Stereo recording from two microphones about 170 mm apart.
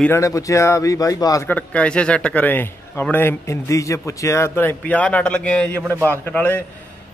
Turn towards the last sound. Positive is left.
turn(degrees=10)  # may be behind; listen again after turning